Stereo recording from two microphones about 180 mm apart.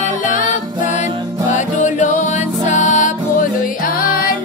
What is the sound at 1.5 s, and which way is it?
Music, 45° left (ahead or behind).